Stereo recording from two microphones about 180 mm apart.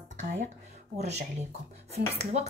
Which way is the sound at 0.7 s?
40° right (ahead or behind).